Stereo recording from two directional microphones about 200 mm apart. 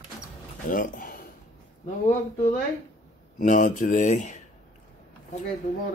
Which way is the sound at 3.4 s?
40° left (ahead or behind).